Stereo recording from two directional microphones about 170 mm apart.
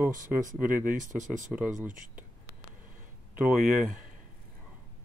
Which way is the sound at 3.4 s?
5° right (ahead or behind).